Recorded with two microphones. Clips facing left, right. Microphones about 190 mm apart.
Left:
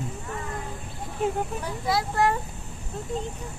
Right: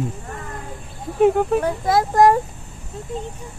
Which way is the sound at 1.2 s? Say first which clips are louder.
Right 11 dB; 65° right (ahead or behind).